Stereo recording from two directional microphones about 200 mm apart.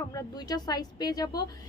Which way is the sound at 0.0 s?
15° left (ahead or behind).